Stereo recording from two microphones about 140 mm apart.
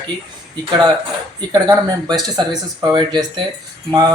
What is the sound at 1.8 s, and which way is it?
A man's voice, 30° right (ahead or behind).